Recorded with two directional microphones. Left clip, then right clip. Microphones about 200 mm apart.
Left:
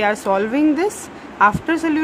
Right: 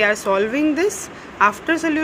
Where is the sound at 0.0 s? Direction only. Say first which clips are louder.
Even; 15° left (ahead or behind).